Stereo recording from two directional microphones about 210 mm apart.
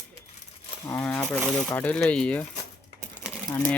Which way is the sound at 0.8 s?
5° left (ahead or behind).